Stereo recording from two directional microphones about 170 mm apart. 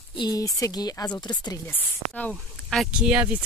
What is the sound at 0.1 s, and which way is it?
Speech, 25° left (ahead or behind).